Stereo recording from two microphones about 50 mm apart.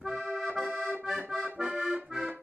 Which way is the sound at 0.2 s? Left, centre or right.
Right.